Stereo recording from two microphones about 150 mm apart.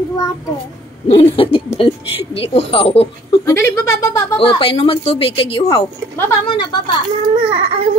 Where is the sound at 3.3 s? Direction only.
20° left (ahead or behind).